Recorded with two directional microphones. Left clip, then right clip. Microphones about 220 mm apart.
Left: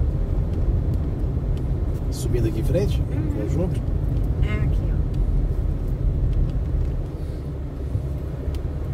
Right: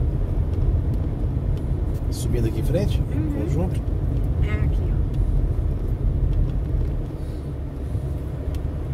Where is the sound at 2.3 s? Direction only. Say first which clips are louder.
Left 1 dB; 15° right (ahead or behind).